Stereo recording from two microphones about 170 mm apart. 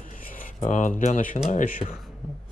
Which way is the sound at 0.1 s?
50° left (ahead or behind).